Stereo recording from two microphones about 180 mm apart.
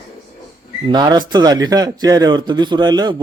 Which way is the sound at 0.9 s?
25° right (ahead or behind).